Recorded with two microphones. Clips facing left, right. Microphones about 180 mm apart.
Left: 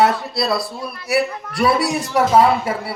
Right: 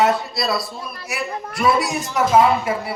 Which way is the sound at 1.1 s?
35° left (ahead or behind).